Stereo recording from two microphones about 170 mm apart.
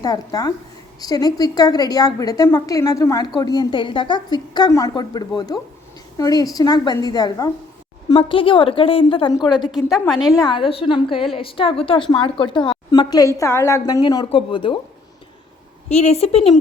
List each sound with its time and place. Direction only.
0.0 s a woman's voice: 20° left (ahead or behind)
9.7 s a woman's voice: centre (ahead or behind)
10.3 s a woman's voice: 25° left (ahead or behind)
15.9 s a woman's voice: 40° left (ahead or behind)